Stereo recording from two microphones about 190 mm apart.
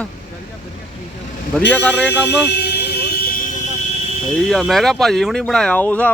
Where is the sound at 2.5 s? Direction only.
60° left (ahead or behind).